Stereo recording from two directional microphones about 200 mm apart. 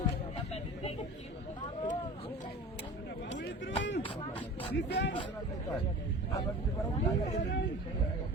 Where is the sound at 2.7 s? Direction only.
60° left (ahead or behind).